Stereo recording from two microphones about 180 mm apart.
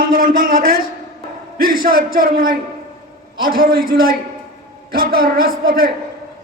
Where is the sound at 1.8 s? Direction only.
55° right (ahead or behind).